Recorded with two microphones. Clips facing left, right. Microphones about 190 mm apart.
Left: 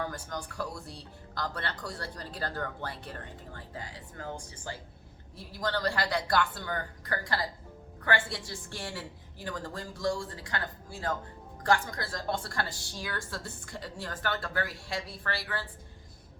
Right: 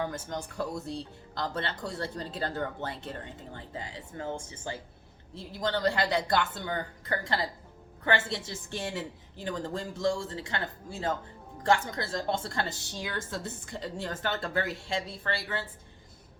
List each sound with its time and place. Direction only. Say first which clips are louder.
0.0 s speech: right 3 dB; 25° right (ahead or behind)